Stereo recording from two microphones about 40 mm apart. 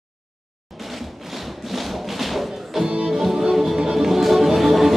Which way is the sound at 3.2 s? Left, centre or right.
Centre.